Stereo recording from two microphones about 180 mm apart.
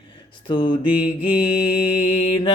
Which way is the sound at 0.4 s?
30° left (ahead or behind).